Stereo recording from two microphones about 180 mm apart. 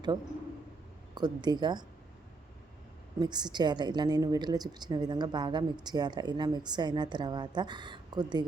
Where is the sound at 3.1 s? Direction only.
25° right (ahead or behind).